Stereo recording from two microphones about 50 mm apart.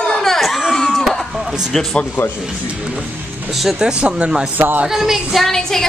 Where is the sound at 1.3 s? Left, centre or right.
Centre.